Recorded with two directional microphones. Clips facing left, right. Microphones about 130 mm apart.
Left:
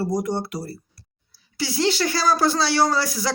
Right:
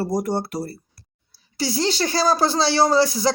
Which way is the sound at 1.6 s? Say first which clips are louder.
Even; 35° right (ahead or behind).